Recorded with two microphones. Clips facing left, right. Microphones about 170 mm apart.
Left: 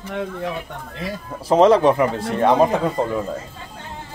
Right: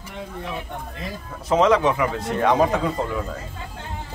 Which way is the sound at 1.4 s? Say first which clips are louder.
Left 4 dB; 35° left (ahead or behind).